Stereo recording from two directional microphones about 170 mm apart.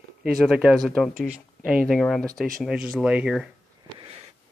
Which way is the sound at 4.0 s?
35° right (ahead or behind).